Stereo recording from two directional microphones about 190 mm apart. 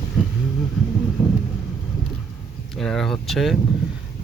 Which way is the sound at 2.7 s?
Centre (ahead or behind).